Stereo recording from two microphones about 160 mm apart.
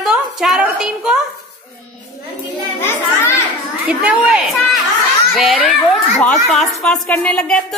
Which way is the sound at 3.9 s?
5° right (ahead or behind).